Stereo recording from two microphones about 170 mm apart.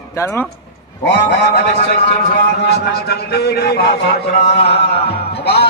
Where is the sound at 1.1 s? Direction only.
75° left (ahead or behind).